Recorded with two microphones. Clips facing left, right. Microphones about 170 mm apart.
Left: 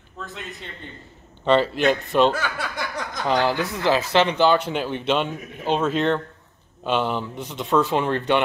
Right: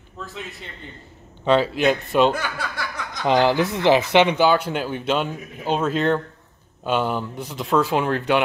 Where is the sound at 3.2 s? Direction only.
20° right (ahead or behind).